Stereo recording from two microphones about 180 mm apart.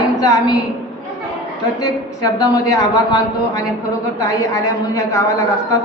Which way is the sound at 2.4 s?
20° left (ahead or behind).